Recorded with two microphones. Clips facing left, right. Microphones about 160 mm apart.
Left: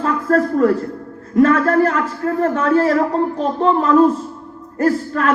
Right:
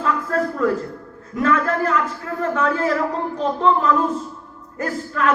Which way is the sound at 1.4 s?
50° left (ahead or behind).